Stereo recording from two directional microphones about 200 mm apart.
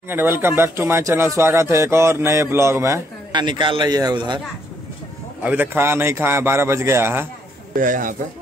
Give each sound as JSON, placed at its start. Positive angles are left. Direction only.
{"t": 0.1, "sound": "speech", "side_deg": -10}
{"t": 5.4, "sound": "speech", "side_deg": -10}
{"t": 7.7, "sound": "a man's voice", "side_deg": -40}